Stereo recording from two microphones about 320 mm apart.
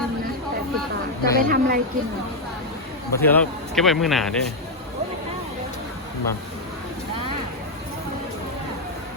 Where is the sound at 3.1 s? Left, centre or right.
Centre.